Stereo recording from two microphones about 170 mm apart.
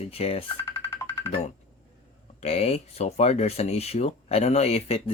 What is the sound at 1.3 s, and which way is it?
Speech, 40° left (ahead or behind).